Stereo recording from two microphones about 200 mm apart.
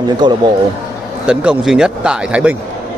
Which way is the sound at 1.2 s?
5° right (ahead or behind).